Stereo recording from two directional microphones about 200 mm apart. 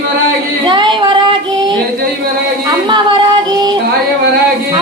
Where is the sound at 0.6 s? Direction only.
25° right (ahead or behind).